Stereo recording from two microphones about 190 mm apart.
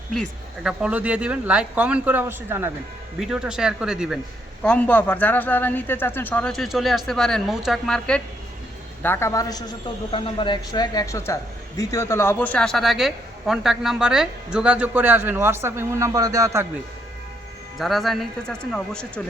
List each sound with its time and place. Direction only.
0.1 s speech: centre (ahead or behind)
4.6 s a man's voice: 5° left (ahead or behind); by 16.6 s 15° right (ahead or behind)
17.7 s speech: centre (ahead or behind)